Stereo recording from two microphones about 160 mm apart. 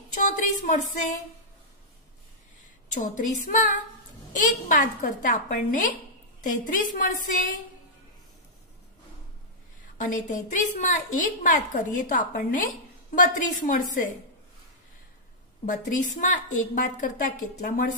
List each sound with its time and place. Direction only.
0.1 s a woman's voice: 50° left (ahead or behind)
2.9 s a woman's voice: 55° left (ahead or behind)
9.9 s a woman's voice: 55° left (ahead or behind)
15.6 s a woman's voice: 55° left (ahead or behind)